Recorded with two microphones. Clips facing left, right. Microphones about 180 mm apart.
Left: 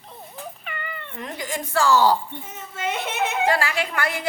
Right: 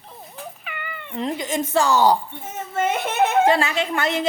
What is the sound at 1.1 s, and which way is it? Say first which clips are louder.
Speech: right 7 dB; 20° right (ahead or behind).